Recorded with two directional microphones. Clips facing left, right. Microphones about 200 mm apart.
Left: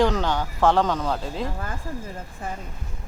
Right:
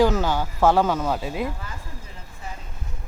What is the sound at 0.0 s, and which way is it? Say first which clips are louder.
Speech: right 2 dB; 5° right (ahead or behind).